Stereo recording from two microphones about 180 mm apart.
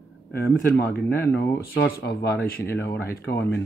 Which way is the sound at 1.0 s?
15° left (ahead or behind).